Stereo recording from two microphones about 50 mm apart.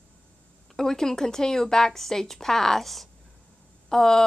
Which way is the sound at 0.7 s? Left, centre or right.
Centre.